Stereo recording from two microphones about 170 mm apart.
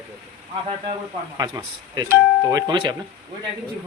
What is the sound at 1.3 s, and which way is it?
Speech, 20° right (ahead or behind).